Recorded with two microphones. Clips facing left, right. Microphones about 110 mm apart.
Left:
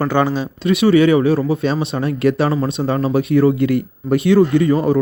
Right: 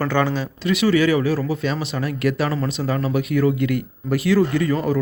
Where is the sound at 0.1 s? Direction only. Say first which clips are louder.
Left 4 dB; 20° left (ahead or behind).